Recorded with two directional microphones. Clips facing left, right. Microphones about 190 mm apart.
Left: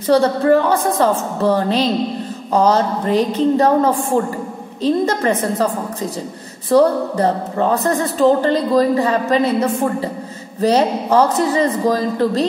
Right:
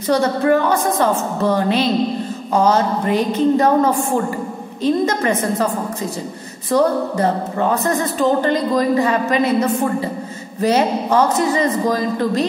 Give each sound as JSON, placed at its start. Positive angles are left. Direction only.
{"t": 0.0, "sound": "speech", "side_deg": 35}
{"t": 6.7, "sound": "speech", "side_deg": 30}